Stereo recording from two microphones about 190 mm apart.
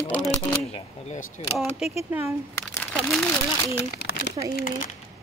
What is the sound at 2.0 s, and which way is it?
Speech, 10° right (ahead or behind).